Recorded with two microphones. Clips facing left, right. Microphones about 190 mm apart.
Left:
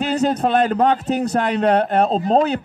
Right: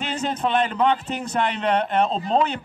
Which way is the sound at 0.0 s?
40° left (ahead or behind).